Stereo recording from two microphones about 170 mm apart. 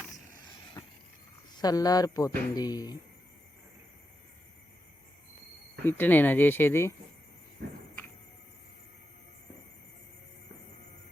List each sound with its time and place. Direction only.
0.4 s vehicle: 25° left (ahead or behind)
1.5 s speech: 20° left (ahead or behind)
5.8 s speech: 10° left (ahead or behind)